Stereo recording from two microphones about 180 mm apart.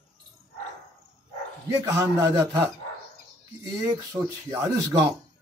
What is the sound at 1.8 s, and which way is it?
Speech, 15° right (ahead or behind).